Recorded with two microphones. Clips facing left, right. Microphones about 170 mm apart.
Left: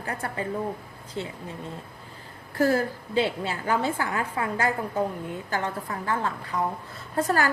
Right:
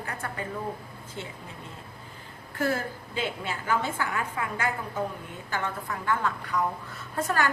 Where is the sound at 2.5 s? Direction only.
35° left (ahead or behind).